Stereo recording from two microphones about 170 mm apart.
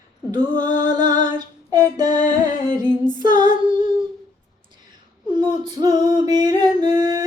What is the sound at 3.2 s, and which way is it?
Female singing, 25° right (ahead or behind).